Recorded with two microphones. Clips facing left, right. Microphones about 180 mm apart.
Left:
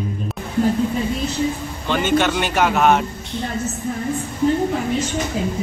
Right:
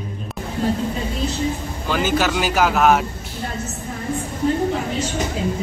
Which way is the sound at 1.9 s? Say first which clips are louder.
Left 2 dB; 5° right (ahead or behind).